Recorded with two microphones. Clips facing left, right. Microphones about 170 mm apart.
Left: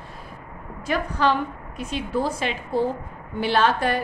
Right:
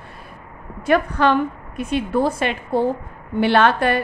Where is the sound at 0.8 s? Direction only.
60° right (ahead or behind).